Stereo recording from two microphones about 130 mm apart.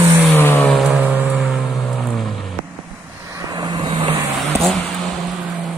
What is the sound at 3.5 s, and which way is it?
Vehicle, 35° right (ahead or behind).